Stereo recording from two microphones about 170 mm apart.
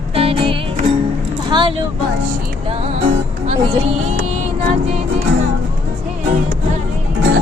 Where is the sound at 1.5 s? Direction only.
25° right (ahead or behind).